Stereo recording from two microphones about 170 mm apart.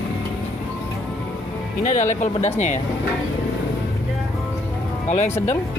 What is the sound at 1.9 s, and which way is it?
Speech, 45° left (ahead or behind).